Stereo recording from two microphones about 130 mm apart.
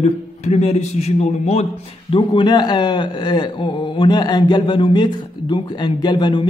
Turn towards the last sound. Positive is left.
turn(degrees=35)  # may be behind; listen again after turning